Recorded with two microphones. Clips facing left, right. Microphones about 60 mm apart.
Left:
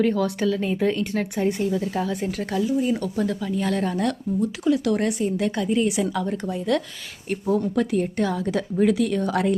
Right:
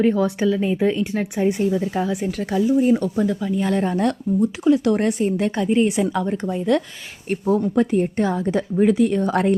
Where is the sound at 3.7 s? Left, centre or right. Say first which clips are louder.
Right 4 dB; right.